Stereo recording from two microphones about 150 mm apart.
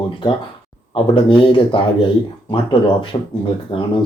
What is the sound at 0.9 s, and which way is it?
Speech, 35° left (ahead or behind).